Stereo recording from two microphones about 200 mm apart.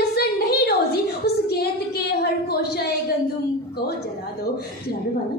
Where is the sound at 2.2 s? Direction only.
55° left (ahead or behind).